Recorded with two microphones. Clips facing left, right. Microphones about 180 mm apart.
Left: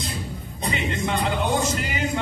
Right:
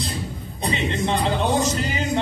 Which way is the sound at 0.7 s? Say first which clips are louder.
Right 3 dB; 40° right (ahead or behind).